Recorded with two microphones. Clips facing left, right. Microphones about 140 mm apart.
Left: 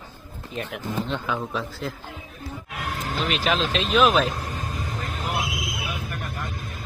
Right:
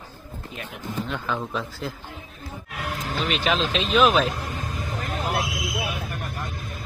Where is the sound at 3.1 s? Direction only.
Centre (ahead or behind).